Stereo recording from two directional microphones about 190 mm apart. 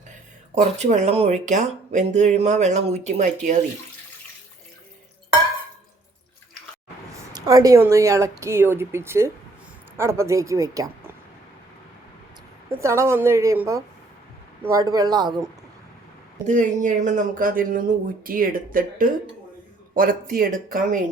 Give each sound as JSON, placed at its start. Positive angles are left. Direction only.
{"t": 0.5, "sound": "speech", "side_deg": -35}
{"t": 7.3, "sound": "speech", "side_deg": -20}
{"t": 12.8, "sound": "speech", "side_deg": -15}
{"t": 16.5, "sound": "a man's voice", "side_deg": -40}